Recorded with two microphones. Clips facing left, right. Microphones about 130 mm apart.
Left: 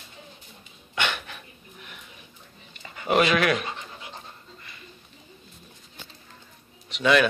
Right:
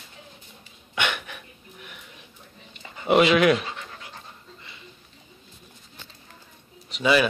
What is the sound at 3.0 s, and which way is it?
Speech, 15° right (ahead or behind).